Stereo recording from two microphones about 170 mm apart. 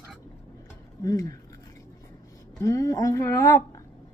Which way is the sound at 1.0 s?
20° left (ahead or behind).